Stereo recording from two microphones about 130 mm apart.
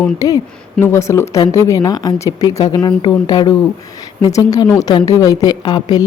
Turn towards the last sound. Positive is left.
turn(degrees=30)  # may be behind; listen again after turning